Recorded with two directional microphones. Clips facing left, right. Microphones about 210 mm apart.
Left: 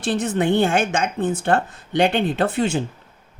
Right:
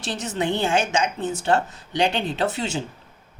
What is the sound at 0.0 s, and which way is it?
Speech, 55° left (ahead or behind).